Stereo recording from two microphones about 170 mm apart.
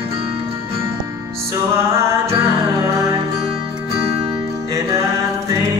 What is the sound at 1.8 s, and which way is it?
Music, 15° right (ahead or behind).